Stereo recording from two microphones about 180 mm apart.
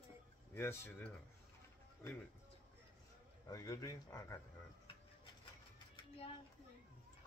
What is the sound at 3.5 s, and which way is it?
Speech, 20° left (ahead or behind).